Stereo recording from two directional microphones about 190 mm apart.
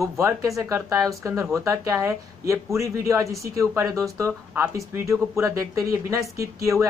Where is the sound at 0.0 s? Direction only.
15° right (ahead or behind).